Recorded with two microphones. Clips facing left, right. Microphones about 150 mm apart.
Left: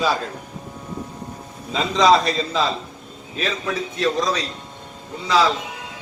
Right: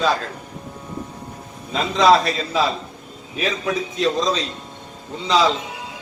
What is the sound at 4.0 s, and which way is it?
Speech, 20° right (ahead or behind).